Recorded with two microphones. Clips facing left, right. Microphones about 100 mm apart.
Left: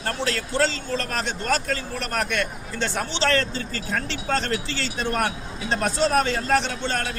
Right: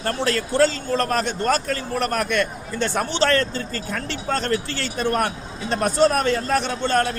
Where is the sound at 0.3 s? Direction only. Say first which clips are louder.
Right 5 dB; 45° right (ahead or behind).